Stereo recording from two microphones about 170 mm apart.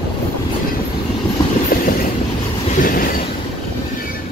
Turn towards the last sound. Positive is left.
turn(degrees=55)  # may be behind; listen again after turning